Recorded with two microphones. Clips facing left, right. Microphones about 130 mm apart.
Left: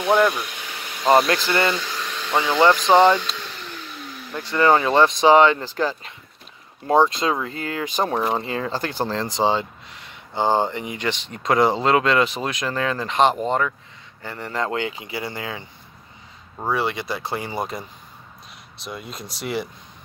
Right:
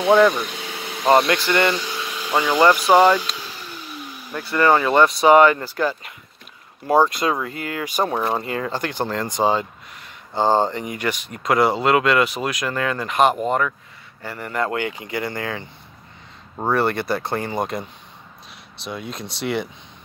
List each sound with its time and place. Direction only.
0.1 s speech: 5° left (ahead or behind)
1.7 s a sound: 10° right (ahead or behind)
2.7 s speech: 10° right (ahead or behind)
4.0 s vehicle: 10° right (ahead or behind)
4.6 s speech: 20° left (ahead or behind)
16.7 s speech: centre (ahead or behind)
17.4 s speech: 15° left (ahead or behind)
18.8 s speech: centre (ahead or behind)